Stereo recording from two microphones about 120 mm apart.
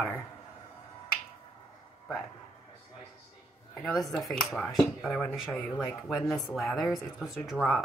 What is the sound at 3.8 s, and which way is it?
Speech, centre (ahead or behind).